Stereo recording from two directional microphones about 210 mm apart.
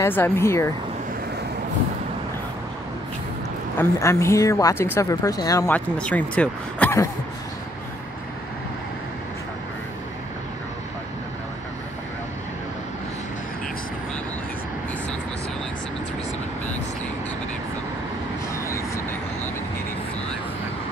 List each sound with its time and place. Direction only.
0.0 s speech: 10° left (ahead or behind)
3.7 s speech: 15° left (ahead or behind)
5.9 s speech: 5° left (ahead or behind)
18.5 s vehicle: 15° left (ahead or behind)